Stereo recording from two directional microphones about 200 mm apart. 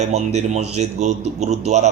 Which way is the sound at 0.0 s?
35° right (ahead or behind).